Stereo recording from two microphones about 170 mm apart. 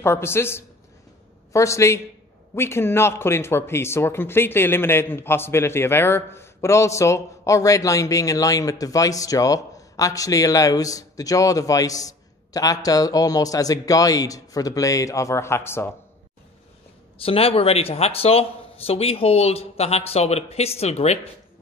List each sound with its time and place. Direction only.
0.0 s a woman's voice: 15° left (ahead or behind)
17.2 s speech: 35° left (ahead or behind)